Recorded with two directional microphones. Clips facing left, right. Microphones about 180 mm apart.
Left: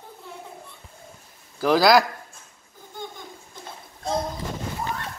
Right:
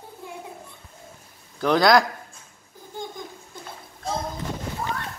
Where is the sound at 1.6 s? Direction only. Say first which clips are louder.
Left 1 dB; 5° left (ahead or behind).